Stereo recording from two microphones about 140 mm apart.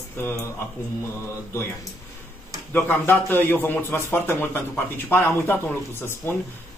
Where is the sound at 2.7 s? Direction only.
15° left (ahead or behind).